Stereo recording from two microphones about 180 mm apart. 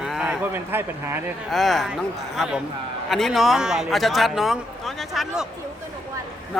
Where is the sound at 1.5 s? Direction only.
Centre (ahead or behind).